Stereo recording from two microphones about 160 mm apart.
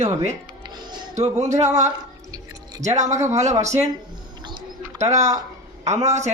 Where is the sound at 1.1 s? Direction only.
45° right (ahead or behind).